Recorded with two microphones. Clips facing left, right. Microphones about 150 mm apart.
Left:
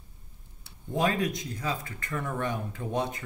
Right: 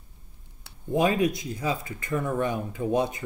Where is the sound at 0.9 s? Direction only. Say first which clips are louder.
Right 4 dB; 10° right (ahead or behind).